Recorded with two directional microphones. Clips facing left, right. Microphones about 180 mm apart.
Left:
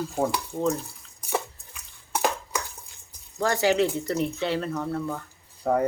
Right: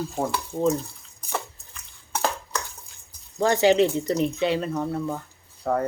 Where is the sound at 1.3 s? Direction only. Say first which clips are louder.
Left 3 dB; 10° left (ahead or behind).